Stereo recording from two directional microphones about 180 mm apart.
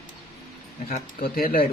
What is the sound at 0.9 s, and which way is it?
Speech, 55° left (ahead or behind).